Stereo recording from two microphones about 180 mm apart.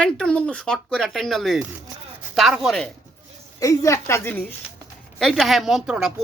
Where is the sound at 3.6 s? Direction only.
15° left (ahead or behind).